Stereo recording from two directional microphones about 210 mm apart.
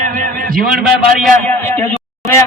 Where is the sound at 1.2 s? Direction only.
10° left (ahead or behind).